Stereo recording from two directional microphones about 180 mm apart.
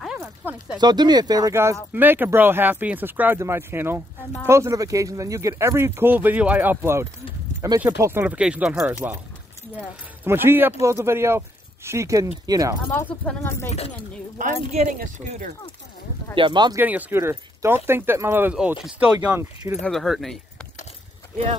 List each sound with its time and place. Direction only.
0.2 s a sound: 10° right (ahead or behind)
0.7 s speech: 25° right (ahead or behind); by 8.9 s 5° right (ahead or behind)
10.2 s speech: 10° right (ahead or behind)
12.9 s speech: 10° left (ahead or behind)
13.7 s speech: 35° left (ahead or behind)
14.4 s speech: 40° right (ahead or behind)
16.3 s speech: 25° right (ahead or behind)
16.8 s speech: 10° right (ahead or behind)